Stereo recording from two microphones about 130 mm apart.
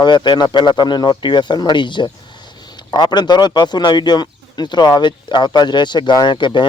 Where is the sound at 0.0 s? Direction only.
35° left (ahead or behind).